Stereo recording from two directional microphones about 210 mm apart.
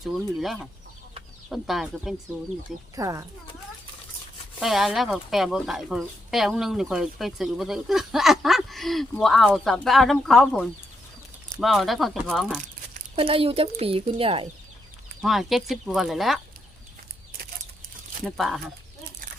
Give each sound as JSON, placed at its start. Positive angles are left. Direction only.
{"t": 0.0, "sound": "speech", "side_deg": 0}
{"t": 2.9, "sound": "speech", "side_deg": -15}
{"t": 4.6, "sound": "speech", "side_deg": 0}
{"t": 13.1, "sound": "a woman's voice", "side_deg": -25}
{"t": 15.2, "sound": "speech", "side_deg": 0}
{"t": 18.3, "sound": "speech", "side_deg": 0}